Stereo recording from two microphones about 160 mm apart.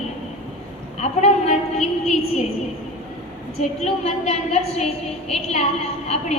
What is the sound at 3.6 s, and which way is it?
A woman's voice, 40° left (ahead or behind).